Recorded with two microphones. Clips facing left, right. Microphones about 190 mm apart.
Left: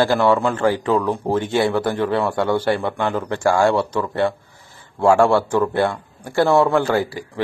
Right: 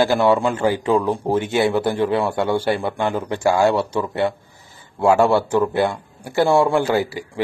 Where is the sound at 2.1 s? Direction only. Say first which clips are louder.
Even; 20° right (ahead or behind).